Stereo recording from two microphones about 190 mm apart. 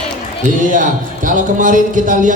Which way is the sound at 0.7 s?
45° right (ahead or behind).